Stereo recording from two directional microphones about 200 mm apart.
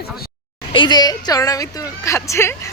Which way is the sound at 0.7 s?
20° left (ahead or behind).